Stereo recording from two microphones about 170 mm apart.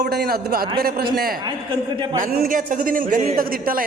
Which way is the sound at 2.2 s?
60° right (ahead or behind).